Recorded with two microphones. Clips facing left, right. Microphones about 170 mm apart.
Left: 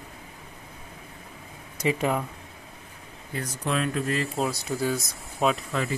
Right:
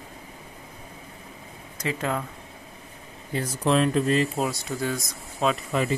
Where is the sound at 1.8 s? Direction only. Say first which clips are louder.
Left 3 dB; 10° left (ahead or behind).